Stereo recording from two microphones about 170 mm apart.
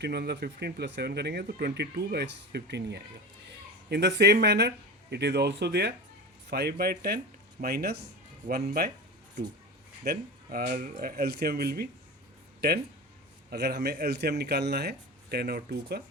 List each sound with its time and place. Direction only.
0.0 s speech: 75° right (ahead or behind)
8.4 s speech: 50° right (ahead or behind)
10.0 s speech: 60° right (ahead or behind)
13.5 s speech: 70° right (ahead or behind)